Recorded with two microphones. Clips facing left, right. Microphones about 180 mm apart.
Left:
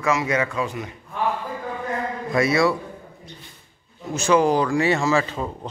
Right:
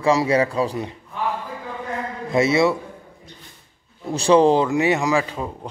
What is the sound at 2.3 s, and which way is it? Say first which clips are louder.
Speech: right 2 dB; 25° right (ahead or behind).